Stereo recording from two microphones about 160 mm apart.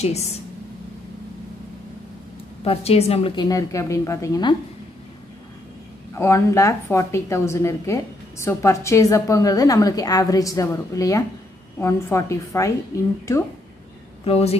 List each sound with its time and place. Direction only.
2.6 s a woman's voice: 40° left (ahead or behind)
3.4 s a woman's voice: 20° left (ahead or behind)
6.1 s a woman's voice: 15° left (ahead or behind)
14.2 s a woman's voice: 40° left (ahead or behind)